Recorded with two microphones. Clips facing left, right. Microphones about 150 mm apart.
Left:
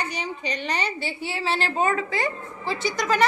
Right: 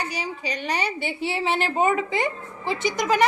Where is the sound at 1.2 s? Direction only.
20° right (ahead or behind).